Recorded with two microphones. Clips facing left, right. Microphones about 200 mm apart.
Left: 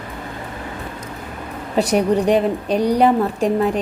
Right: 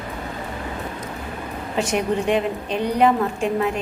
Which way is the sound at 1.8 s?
35° left (ahead or behind).